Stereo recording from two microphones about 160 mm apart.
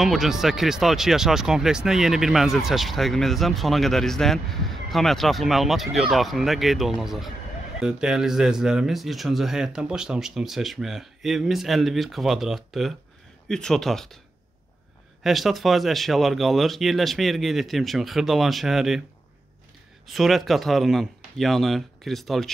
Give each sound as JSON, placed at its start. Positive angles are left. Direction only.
{"t": 0.0, "sound": "speech", "side_deg": 0}
{"t": 15.2, "sound": "speech", "side_deg": 0}
{"t": 20.1, "sound": "speech", "side_deg": 0}